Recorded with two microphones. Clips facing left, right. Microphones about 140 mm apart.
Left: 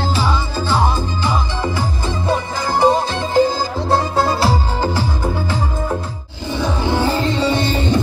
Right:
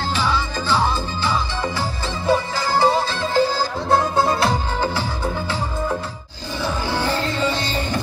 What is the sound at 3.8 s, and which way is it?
Music, centre (ahead or behind).